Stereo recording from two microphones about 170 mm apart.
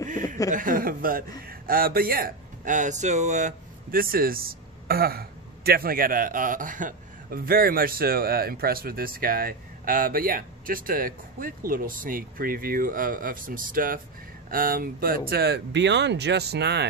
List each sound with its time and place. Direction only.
0.5 s a man's voice: 55° right (ahead or behind); by 16.8 s 80° right